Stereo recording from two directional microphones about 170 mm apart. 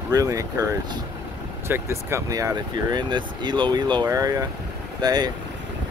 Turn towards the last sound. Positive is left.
turn(degrees=-25)  # may be behind; listen again after turning